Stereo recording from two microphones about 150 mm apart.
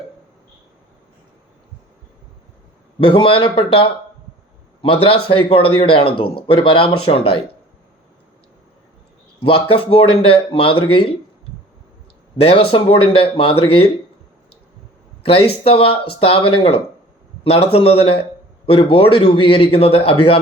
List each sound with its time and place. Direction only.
3.0 s speech: 35° left (ahead or behind)
9.4 s speech: 40° left (ahead or behind)
12.4 s speech: 40° left (ahead or behind)
15.2 s speech: 40° left (ahead or behind)